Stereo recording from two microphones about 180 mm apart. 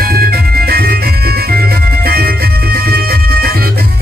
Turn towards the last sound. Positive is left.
turn(degrees=-60)  # may be behind; listen again after turning